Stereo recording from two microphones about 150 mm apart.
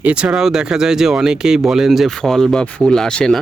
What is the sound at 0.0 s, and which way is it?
Speech, 5° right (ahead or behind).